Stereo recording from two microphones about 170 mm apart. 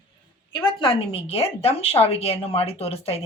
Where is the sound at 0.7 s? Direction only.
30° left (ahead or behind).